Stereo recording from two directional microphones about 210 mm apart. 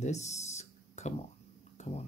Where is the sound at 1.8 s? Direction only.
35° left (ahead or behind).